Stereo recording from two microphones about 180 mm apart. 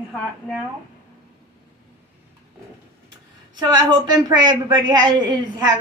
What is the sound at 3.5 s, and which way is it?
A woman's voice, 25° right (ahead or behind).